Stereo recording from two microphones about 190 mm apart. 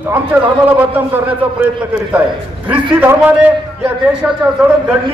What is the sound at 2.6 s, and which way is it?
Speech, 10° right (ahead or behind).